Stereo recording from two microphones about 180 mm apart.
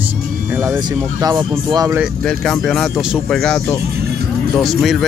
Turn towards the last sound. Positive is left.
turn(degrees=0)  # may be behind; listen again after turning